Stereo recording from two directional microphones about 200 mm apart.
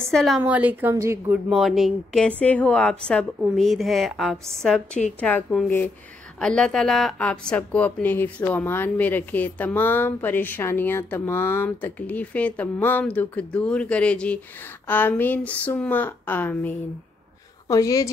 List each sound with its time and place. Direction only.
0.1 s a woman's voice: centre (ahead or behind)
1.5 s a woman's voice: centre (ahead or behind); by 18.1 s 15° left (ahead or behind)